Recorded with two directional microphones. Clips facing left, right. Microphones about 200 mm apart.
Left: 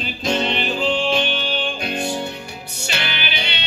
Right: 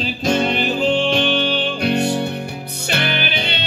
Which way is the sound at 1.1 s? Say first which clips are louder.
Right 4 dB; 65° right (ahead or behind).